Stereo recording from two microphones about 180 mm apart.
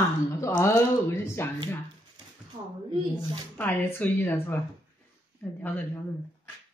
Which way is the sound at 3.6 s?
10° left (ahead or behind).